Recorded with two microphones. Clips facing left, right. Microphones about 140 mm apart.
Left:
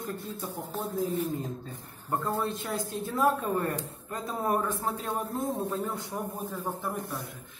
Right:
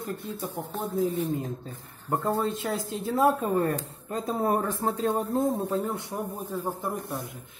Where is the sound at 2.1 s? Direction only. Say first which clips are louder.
Right 3 dB; 20° right (ahead or behind).